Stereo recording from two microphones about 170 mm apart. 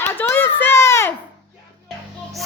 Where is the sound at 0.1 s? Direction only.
15° left (ahead or behind).